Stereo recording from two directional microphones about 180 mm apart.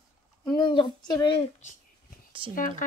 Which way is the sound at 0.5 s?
25° left (ahead or behind).